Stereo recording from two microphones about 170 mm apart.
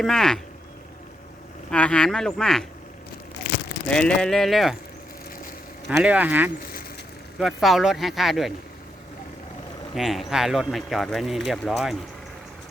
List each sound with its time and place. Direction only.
0.0 s speech: 5° left (ahead or behind)
1.7 s speech: 5° left (ahead or behind)
3.8 s speech: 5° left (ahead or behind)
5.9 s speech: 5° right (ahead or behind)
9.9 s speech: centre (ahead or behind)